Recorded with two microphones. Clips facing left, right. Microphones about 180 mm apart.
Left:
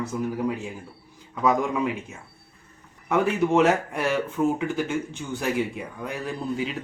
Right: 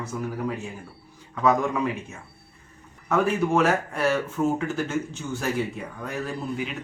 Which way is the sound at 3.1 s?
20° left (ahead or behind).